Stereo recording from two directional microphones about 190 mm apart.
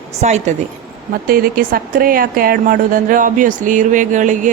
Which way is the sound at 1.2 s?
50° right (ahead or behind).